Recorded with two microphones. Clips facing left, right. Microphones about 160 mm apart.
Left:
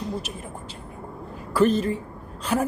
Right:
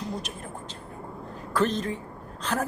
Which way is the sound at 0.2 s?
5° left (ahead or behind).